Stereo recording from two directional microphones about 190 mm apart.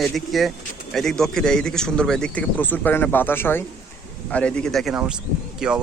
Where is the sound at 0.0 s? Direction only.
Centre (ahead or behind).